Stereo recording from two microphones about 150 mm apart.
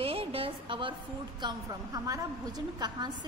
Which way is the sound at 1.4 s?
25° right (ahead or behind).